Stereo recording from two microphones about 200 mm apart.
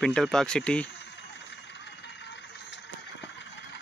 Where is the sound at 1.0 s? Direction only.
60° left (ahead or behind).